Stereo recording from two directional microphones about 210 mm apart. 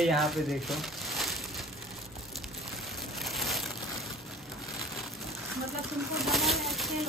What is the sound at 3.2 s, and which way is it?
Crushing, centre (ahead or behind).